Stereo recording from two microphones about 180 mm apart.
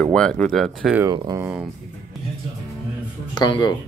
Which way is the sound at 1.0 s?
20° right (ahead or behind).